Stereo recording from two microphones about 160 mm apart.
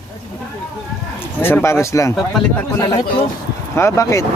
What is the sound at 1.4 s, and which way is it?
Speech, 15° left (ahead or behind).